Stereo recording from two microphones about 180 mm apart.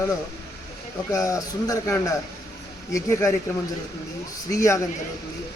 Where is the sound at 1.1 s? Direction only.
15° left (ahead or behind).